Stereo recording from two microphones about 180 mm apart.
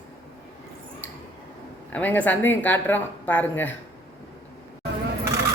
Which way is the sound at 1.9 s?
10° left (ahead or behind).